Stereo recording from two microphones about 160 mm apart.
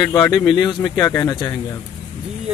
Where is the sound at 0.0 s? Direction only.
20° left (ahead or behind).